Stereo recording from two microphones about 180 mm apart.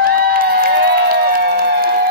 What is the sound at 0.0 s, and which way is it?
Crowd, 55° right (ahead or behind).